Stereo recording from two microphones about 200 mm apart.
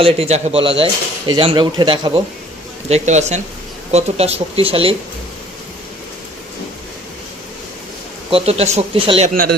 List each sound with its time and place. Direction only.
0.0 s speech: 30° right (ahead or behind)
2.9 s speech: 35° right (ahead or behind)
8.3 s speech: 30° right (ahead or behind)
9.3 s speech: 45° right (ahead or behind)